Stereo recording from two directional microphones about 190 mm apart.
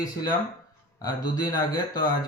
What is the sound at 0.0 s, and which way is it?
Speech, 20° left (ahead or behind).